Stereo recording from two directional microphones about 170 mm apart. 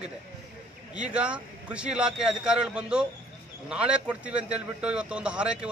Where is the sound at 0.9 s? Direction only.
5° right (ahead or behind).